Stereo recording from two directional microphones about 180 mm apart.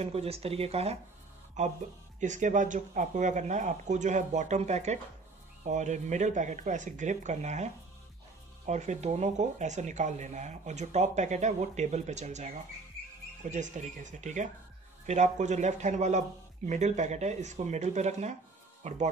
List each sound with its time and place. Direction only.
0.0 s speech: 35° right (ahead or behind)